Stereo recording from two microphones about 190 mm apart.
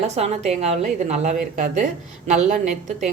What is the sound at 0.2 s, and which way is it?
A woman's voice, 35° right (ahead or behind).